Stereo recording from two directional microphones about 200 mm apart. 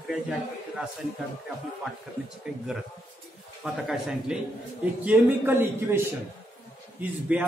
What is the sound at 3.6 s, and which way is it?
A man's voice, centre (ahead or behind).